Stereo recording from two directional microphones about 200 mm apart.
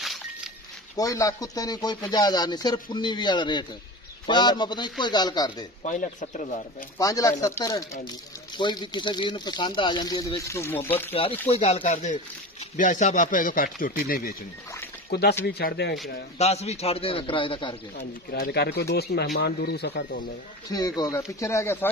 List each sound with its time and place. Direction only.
0.0 s a sound: centre (ahead or behind)
0.9 s speech: 15° left (ahead or behind)
5.8 s speech: 35° left (ahead or behind)
7.0 s speech: 20° left (ahead or behind)
11.4 s speech: 30° left (ahead or behind); by 16.0 s 50° left (ahead or behind)
16.3 s speech: 30° left (ahead or behind)
17.9 s speech: 55° left (ahead or behind)
20.6 s speech: 20° left (ahead or behind)